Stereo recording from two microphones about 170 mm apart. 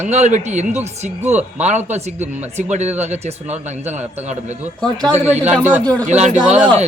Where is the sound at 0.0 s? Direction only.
40° right (ahead or behind).